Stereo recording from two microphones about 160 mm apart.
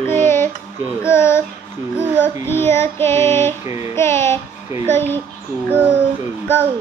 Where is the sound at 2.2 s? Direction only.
15° left (ahead or behind).